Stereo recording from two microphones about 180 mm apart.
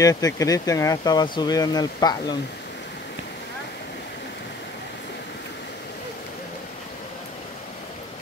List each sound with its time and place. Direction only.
0.0 s speech: 20° left (ahead or behind)